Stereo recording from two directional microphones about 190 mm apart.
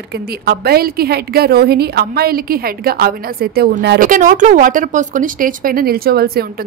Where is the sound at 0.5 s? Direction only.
55° right (ahead or behind).